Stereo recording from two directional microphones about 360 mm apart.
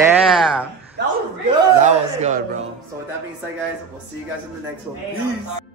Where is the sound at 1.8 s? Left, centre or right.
Centre.